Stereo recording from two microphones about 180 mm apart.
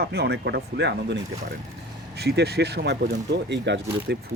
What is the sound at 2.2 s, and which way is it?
Speech, 65° right (ahead or behind).